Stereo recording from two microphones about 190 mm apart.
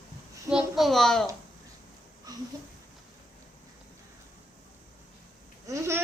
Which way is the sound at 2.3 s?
20° right (ahead or behind).